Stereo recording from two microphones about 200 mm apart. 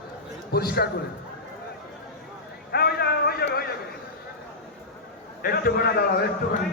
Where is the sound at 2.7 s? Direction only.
55° left (ahead or behind).